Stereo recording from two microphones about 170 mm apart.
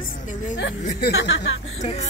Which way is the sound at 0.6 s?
80° left.